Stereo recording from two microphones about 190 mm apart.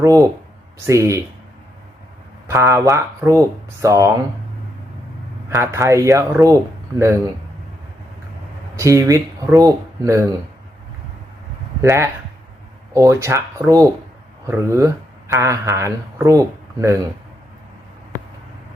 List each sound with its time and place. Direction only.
0.0 s speech: 15° right (ahead or behind)
2.5 s speech: 15° right (ahead or behind)
5.5 s speech: 15° right (ahead or behind)
8.7 s speech: 15° right (ahead or behind)
11.8 s speech: 15° right (ahead or behind)